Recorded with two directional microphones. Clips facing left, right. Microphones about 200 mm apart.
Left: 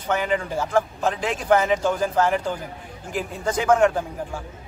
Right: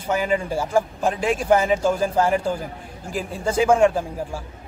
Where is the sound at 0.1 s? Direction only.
10° right (ahead or behind).